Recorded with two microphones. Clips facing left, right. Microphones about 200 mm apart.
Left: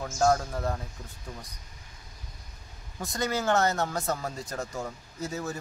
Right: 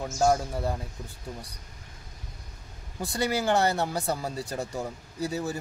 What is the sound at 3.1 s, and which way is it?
Speech, 10° right (ahead or behind).